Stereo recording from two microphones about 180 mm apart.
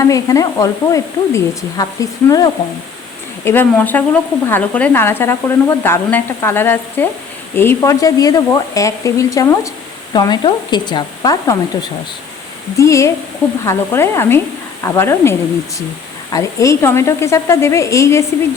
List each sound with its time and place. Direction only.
0.0 s speech: 20° left (ahead or behind)
3.4 s speech: 10° left (ahead or behind)